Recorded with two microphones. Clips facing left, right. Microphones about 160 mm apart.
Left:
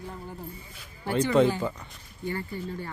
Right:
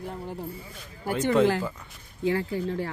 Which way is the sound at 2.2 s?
90° right.